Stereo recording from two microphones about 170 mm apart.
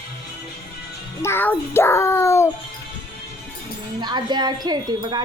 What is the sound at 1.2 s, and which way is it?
A child's voice, 15° left (ahead or behind).